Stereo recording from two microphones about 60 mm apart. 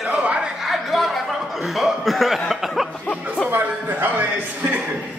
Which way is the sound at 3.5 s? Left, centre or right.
Right.